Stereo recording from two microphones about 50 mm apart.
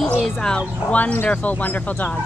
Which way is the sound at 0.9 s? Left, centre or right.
Left.